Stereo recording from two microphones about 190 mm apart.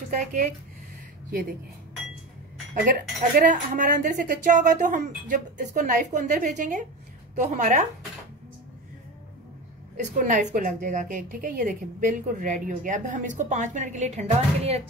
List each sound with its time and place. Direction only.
0.1 s a woman's voice: 40° right (ahead or behind)
3.3 s a woman's voice: 45° right (ahead or behind)
9.9 s a woman's voice: 40° right (ahead or behind)